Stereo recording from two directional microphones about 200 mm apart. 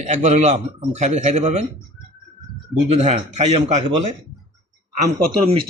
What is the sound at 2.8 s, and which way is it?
A man's voice, 35° right (ahead or behind).